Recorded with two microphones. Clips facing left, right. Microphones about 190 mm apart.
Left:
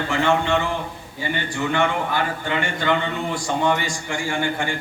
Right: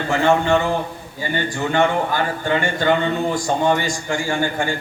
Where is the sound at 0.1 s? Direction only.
45° right (ahead or behind).